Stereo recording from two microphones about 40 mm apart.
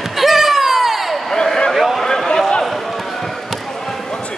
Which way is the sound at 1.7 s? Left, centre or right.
Centre.